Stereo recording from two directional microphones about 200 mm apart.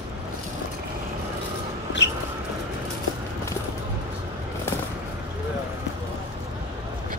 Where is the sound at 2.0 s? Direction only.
65° left (ahead or behind).